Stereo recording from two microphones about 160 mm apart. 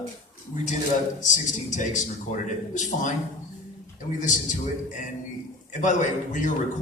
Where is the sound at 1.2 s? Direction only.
50° left (ahead or behind).